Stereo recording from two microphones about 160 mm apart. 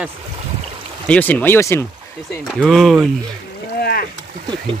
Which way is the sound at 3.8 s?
75° left (ahead or behind).